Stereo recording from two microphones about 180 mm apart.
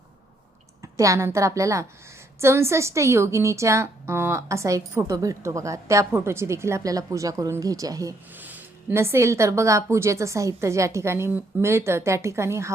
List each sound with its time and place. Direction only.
0.8 s a woman's voice: 15° right (ahead or behind)